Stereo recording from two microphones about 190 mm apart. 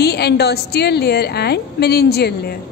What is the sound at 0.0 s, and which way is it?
A woman's voice, 60° left (ahead or behind).